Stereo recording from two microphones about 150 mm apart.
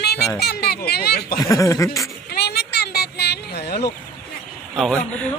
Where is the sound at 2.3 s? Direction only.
90° left.